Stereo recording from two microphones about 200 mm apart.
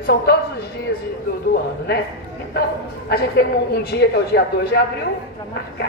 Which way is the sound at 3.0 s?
55° left (ahead or behind).